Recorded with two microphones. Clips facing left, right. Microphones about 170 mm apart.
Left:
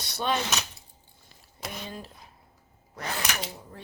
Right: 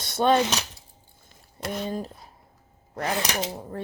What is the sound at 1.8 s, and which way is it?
Speech, 45° right (ahead or behind).